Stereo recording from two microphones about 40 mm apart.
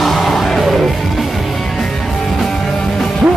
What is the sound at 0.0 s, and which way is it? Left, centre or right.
Music, centre.